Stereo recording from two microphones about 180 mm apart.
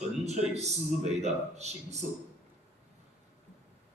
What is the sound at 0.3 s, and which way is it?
A man's voice, 40° right (ahead or behind).